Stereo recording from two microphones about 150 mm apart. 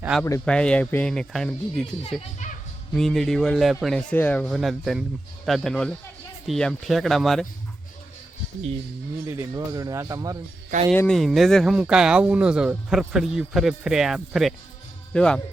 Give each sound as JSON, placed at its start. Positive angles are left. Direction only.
{"t": 0.1, "sound": "speech", "side_deg": 0}
{"t": 2.9, "sound": "speech", "side_deg": 0}
{"t": 4.1, "sound": "speech", "side_deg": 10}
{"t": 9.2, "sound": "speech", "side_deg": -20}
{"t": 10.9, "sound": "speech", "side_deg": 5}